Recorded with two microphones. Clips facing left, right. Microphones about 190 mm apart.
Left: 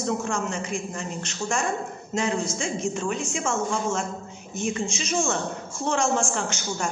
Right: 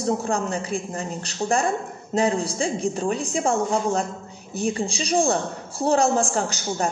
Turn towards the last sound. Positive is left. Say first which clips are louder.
# right 4 dB
turn(degrees=-35)  # may be behind; listen again after turning